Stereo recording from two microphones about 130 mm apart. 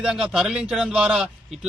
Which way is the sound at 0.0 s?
5° right (ahead or behind).